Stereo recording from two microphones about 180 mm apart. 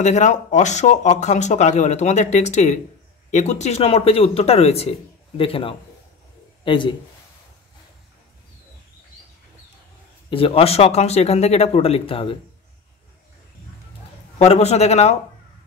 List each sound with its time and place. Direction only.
0.0 s a man's voice: 40° left (ahead or behind)
10.3 s speech: 30° left (ahead or behind)
14.4 s speech: 35° left (ahead or behind)